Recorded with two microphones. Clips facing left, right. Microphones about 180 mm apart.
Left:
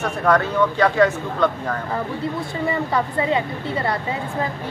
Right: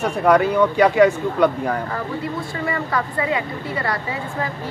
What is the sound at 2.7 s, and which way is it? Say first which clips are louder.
A woman's voice: left 2 dB; 25° left (ahead or behind).